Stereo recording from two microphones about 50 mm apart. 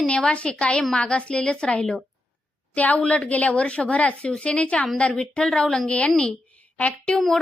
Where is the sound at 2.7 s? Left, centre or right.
Left; by 5.8 s centre.